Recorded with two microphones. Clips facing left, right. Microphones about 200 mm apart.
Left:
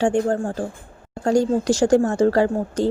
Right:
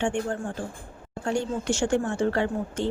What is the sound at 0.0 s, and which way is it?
A woman's voice, 35° left (ahead or behind).